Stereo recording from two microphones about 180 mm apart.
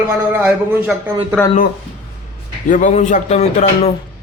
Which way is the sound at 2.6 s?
45° left (ahead or behind).